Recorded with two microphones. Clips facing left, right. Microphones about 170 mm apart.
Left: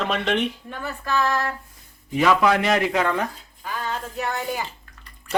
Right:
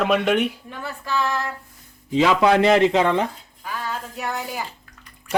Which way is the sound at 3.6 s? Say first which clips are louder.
Left 1 dB; 5° right (ahead or behind).